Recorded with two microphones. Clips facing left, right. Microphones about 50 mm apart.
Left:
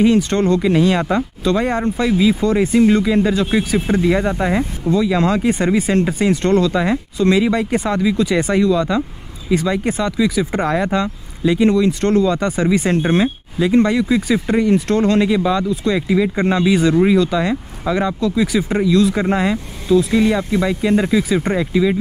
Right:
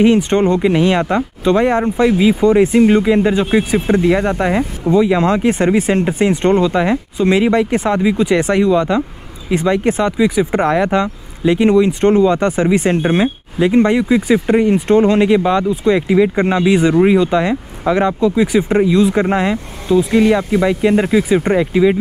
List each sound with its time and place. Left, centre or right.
0.0 s speech: right
4.0 s speech: centre
4.3 s speech: right
7.7 s speech: centre
8.0 s speech: right
12.4 s speech: right
15.2 s speech: right